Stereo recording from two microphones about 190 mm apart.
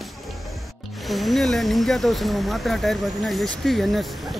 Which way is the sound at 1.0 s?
Centre (ahead or behind).